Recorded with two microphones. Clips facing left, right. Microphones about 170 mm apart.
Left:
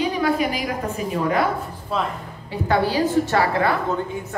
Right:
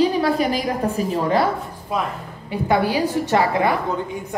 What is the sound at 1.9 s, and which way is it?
A woman's voice, 15° right (ahead or behind).